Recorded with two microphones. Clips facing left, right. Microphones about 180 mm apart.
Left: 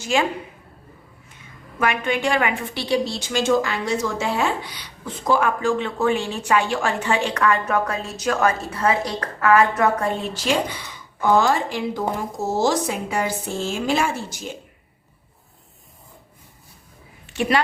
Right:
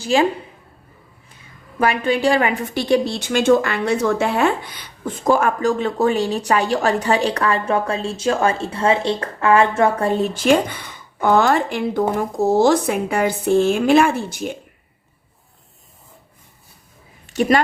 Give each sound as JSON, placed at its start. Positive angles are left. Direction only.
{"t": 0.0, "sound": "a woman's voice", "side_deg": -35}
{"t": 1.8, "sound": "a woman's voice", "side_deg": -35}
{"t": 10.2, "sound": "a woman's voice", "side_deg": -55}
{"t": 17.2, "sound": "a sound", "side_deg": -40}